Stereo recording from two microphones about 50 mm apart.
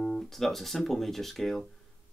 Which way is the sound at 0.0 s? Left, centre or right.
Centre.